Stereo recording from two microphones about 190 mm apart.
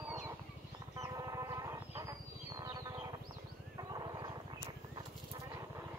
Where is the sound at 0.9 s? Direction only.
20° right (ahead or behind).